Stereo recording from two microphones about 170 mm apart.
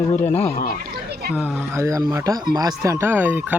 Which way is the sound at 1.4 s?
15° right (ahead or behind).